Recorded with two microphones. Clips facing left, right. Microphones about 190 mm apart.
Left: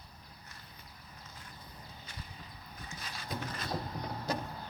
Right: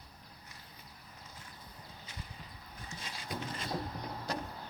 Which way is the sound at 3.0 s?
25° right (ahead or behind).